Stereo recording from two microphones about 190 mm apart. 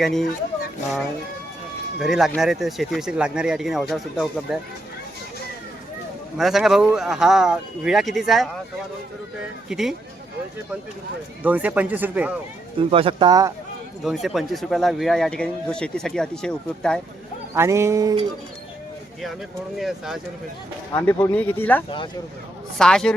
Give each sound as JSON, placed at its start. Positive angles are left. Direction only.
{"t": 0.0, "sound": "speech", "side_deg": 0}
{"t": 2.0, "sound": "speech", "side_deg": 0}
{"t": 6.3, "sound": "speech", "side_deg": 0}
{"t": 9.6, "sound": "speech", "side_deg": 0}
{"t": 11.4, "sound": "speech", "side_deg": -10}
{"t": 12.8, "sound": "speech", "side_deg": -30}
{"t": 14.0, "sound": "speech", "side_deg": 0}
{"t": 17.5, "sound": "speech", "side_deg": -15}
{"t": 19.8, "sound": "speech", "side_deg": 0}
{"t": 21.1, "sound": "speech", "side_deg": 10}
{"t": 21.8, "sound": "speech", "side_deg": 25}
{"t": 22.8, "sound": "speech", "side_deg": 5}